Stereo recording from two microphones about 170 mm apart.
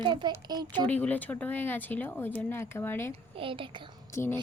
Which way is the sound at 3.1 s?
30° right (ahead or behind).